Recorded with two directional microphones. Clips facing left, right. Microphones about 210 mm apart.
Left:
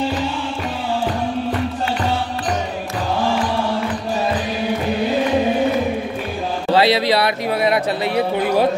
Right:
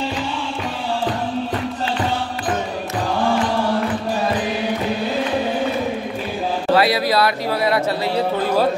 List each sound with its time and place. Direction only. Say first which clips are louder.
6.7 s speech: left 2 dB; 25° left (ahead or behind)